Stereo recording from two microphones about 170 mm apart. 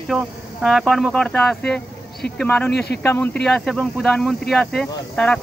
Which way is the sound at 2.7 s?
75° left (ahead or behind).